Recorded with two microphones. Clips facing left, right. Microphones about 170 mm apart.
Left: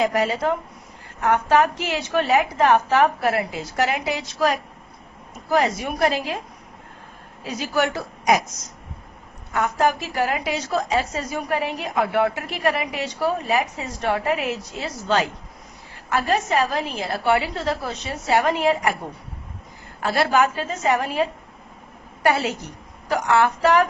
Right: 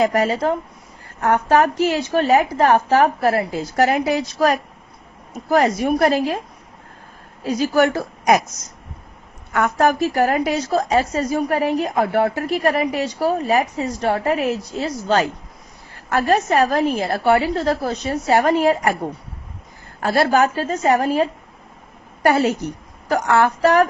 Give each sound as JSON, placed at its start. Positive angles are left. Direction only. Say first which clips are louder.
{"t": 0.0, "sound": "a woman's voice", "louder": "right 3 dB", "side_deg": -45}
{"t": 7.4, "sound": "a woman's voice", "louder": "right 6 dB", "side_deg": -45}
{"t": 9.5, "sound": "a woman's voice", "louder": "right 3 dB", "side_deg": -55}
{"t": 20.0, "sound": "a woman's voice", "louder": "right 3 dB", "side_deg": -40}